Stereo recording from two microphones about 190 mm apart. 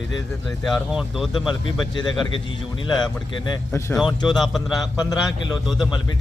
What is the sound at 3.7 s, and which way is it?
Speech, 15° left (ahead or behind).